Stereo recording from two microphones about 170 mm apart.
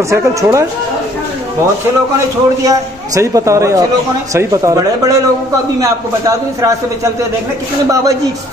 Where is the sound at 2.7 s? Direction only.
20° right (ahead or behind).